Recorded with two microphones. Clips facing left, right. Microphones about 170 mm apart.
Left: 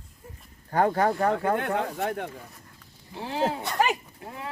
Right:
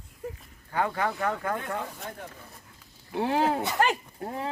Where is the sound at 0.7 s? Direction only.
45° left (ahead or behind).